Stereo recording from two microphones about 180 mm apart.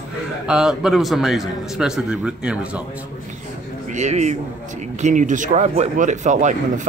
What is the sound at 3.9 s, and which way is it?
A man's voice, 40° right (ahead or behind).